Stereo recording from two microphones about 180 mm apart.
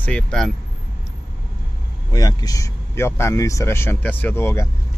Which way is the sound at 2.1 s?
20° left (ahead or behind).